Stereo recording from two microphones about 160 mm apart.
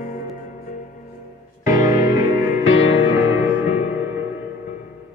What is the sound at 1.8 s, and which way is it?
Music, 20° right (ahead or behind).